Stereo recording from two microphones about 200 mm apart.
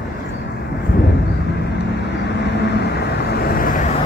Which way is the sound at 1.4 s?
60° left (ahead or behind).